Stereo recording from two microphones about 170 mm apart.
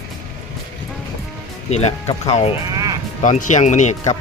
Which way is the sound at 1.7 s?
35° left (ahead or behind).